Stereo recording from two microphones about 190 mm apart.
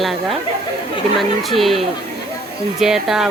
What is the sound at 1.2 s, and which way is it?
Speech, centre (ahead or behind).